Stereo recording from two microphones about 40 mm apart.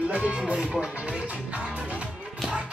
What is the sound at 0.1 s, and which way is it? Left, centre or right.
Music, right.